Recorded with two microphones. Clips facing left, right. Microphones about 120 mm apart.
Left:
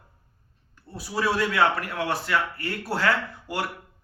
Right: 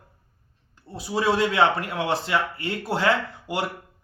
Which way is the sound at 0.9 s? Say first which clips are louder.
Right 3 dB; 25° right (ahead or behind).